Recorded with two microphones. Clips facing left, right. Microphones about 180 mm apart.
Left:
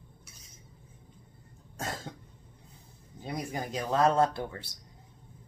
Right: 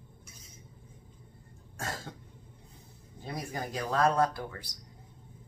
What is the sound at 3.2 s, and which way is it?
A man's voice, 20° left (ahead or behind).